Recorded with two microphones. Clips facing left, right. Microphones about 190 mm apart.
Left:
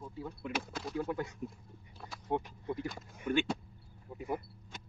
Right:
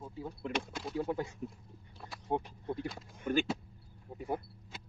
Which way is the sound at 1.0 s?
25° right (ahead or behind).